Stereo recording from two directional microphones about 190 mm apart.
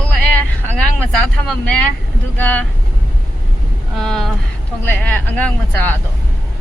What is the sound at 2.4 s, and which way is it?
Speech, 10° left (ahead or behind).